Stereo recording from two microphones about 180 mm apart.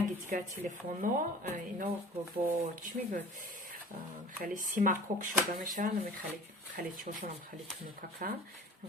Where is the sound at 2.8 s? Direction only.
45° right (ahead or behind).